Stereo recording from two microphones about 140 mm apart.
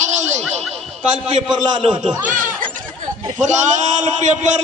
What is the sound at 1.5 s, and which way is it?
Speech, 30° right (ahead or behind).